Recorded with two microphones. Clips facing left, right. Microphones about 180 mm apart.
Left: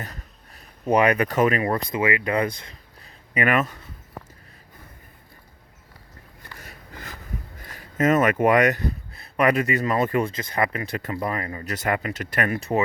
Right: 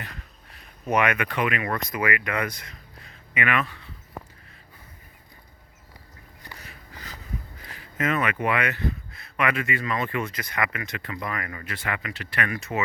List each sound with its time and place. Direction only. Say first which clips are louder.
0.0 s speech: left 3 dB; 40° left (ahead or behind)
6.6 s a sound: left 3 dB; 50° left (ahead or behind)
7.6 s speech: left 7 dB; 45° left (ahead or behind)
10.3 s speech: left 4 dB; 30° left (ahead or behind)